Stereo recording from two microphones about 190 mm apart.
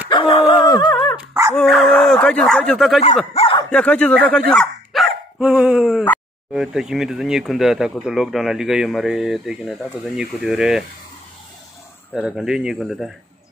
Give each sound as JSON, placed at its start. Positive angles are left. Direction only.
{"t": 0.1, "sound": "dog", "side_deg": 30}
{"t": 1.5, "sound": "speech", "side_deg": 0}
{"t": 3.3, "sound": "a sound", "side_deg": 25}
{"t": 3.7, "sound": "speech", "side_deg": 5}
{"t": 12.1, "sound": "speech", "side_deg": 0}